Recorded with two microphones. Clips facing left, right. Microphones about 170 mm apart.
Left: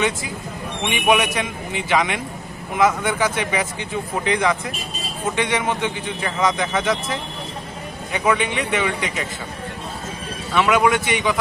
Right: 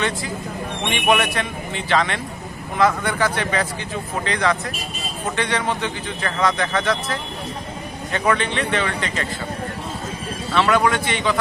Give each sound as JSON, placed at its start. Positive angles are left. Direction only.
{"t": 0.8, "sound": "a man's voice", "side_deg": 15}
{"t": 10.5, "sound": "a man's voice", "side_deg": 15}